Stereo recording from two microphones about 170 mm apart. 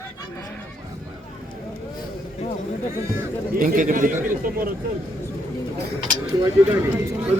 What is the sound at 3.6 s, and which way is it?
A man's voice, 55° right (ahead or behind).